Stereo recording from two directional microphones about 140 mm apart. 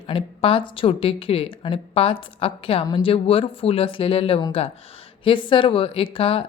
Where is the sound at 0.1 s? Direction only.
40° left (ahead or behind).